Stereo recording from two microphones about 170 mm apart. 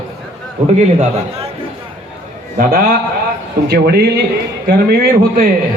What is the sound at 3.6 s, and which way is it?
A man's voice, 70° right (ahead or behind).